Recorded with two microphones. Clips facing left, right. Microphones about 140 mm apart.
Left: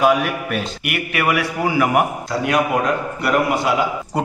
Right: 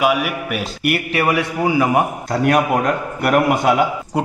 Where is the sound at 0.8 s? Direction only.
30° right (ahead or behind).